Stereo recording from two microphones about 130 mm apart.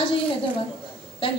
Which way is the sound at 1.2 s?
45° left (ahead or behind).